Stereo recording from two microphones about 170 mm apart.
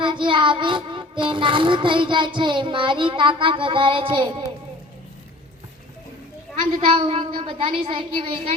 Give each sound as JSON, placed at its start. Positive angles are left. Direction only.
{"t": 0.0, "sound": "child singing", "side_deg": -30}
{"t": 6.7, "sound": "a woman's voice", "side_deg": -35}